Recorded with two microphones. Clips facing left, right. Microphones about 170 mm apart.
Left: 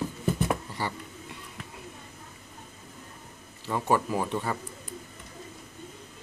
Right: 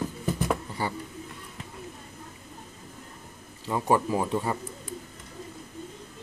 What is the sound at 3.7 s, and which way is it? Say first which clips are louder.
Speech: right 2 dB; 15° right (ahead or behind).